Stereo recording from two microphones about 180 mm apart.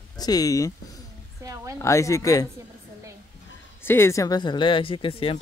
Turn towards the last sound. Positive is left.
turn(degrees=30)  # may be behind; listen again after turning